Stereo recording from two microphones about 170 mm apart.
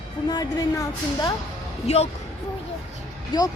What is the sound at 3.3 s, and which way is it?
Speech, 25° left (ahead or behind).